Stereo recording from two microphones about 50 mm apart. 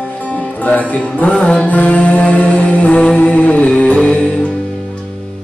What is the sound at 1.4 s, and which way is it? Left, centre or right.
Mantra, left.